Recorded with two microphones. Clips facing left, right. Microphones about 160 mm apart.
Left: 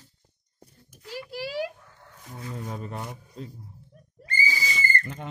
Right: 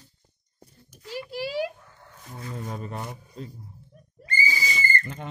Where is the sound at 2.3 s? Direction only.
5° left (ahead or behind).